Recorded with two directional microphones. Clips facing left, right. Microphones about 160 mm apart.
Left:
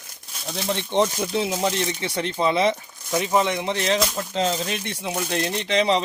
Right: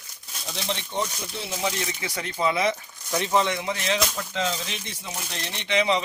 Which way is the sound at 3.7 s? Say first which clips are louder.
Left 4 dB; 35° left (ahead or behind).